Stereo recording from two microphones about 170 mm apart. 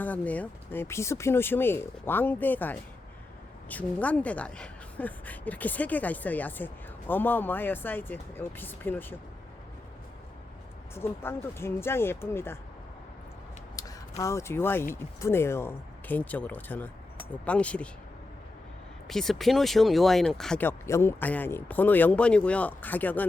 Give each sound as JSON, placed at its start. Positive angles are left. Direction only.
{"t": 0.0, "sound": "speech", "side_deg": 10}
{"t": 10.9, "sound": "speech", "side_deg": 15}
{"t": 13.8, "sound": "vehicle", "side_deg": 20}
{"t": 14.2, "sound": "speech", "side_deg": 15}
{"t": 19.0, "sound": "speech", "side_deg": 0}